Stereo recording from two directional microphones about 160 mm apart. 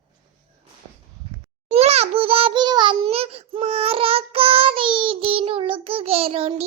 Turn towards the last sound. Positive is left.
turn(degrees=-40)  # may be behind; listen again after turning